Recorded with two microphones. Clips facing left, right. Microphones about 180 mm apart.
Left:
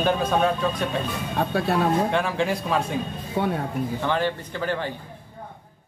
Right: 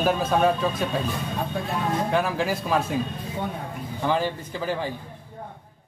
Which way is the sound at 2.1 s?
Centre (ahead or behind).